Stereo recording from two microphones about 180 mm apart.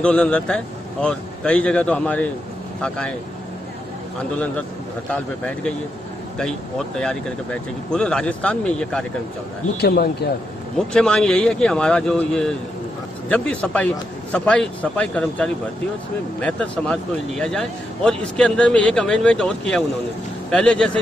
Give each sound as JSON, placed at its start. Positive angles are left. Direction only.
{"t": 0.0, "sound": "speech", "side_deg": 5}
{"t": 5.1, "sound": "speech", "side_deg": 5}
{"t": 7.0, "sound": "speech", "side_deg": 5}
{"t": 9.8, "sound": "speech", "side_deg": 65}
{"t": 10.8, "sound": "speech", "side_deg": 5}